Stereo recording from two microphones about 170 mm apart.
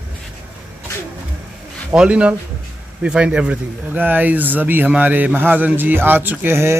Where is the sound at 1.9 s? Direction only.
5° right (ahead or behind).